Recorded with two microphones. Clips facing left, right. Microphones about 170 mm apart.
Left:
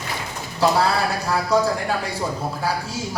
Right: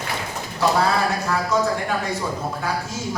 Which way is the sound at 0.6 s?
30° left (ahead or behind).